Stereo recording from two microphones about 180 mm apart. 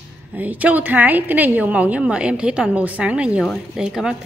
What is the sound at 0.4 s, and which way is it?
A woman's voice, 10° right (ahead or behind).